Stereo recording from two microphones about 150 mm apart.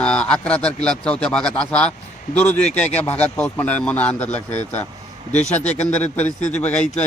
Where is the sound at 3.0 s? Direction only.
10° left (ahead or behind).